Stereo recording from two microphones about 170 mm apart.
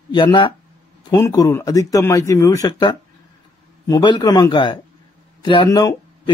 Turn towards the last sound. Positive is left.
turn(degrees=25)  # may be behind; listen again after turning